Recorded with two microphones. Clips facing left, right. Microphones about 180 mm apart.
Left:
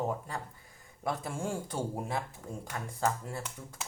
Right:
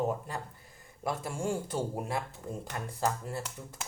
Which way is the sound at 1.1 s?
Centre (ahead or behind).